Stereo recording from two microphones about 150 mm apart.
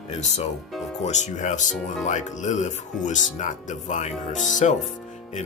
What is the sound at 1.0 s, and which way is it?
Speech, 50° left (ahead or behind).